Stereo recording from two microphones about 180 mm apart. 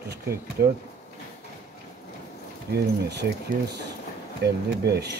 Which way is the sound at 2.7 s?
65° right (ahead or behind).